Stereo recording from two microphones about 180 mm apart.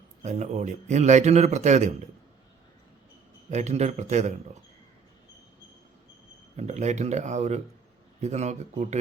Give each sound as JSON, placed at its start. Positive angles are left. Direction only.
{"t": 0.2, "sound": "a man's voice", "side_deg": -40}
{"t": 3.5, "sound": "a man's voice", "side_deg": -40}
{"t": 6.6, "sound": "a man's voice", "side_deg": -40}